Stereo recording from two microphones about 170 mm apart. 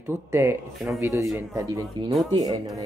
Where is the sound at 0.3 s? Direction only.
15° right (ahead or behind).